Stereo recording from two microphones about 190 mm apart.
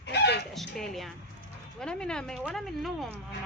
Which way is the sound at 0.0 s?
60° left (ahead or behind).